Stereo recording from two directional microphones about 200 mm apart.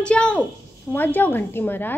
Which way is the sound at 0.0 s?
5° left (ahead or behind).